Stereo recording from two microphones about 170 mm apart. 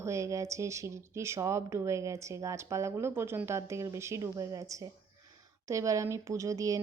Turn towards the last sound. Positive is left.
turn(degrees=-20)  # may be behind; listen again after turning